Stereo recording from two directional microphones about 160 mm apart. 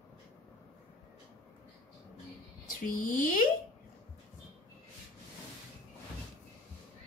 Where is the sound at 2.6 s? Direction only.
60° left (ahead or behind).